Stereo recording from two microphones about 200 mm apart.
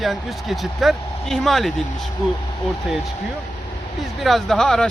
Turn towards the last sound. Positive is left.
turn(degrees=5)  # may be behind; listen again after turning